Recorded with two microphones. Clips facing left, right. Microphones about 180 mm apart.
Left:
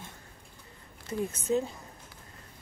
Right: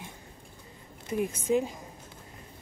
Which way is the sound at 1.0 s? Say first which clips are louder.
Right 2 dB; 10° right (ahead or behind).